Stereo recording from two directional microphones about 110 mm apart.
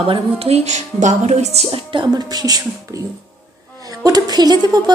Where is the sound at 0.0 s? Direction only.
60° right (ahead or behind).